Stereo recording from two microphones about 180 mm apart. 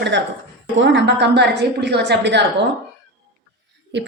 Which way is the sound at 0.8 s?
90° right.